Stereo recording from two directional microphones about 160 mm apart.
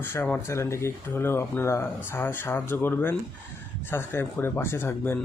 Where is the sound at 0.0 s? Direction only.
15° left (ahead or behind).